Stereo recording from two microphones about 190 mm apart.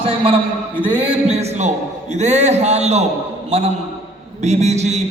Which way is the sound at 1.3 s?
35° right (ahead or behind).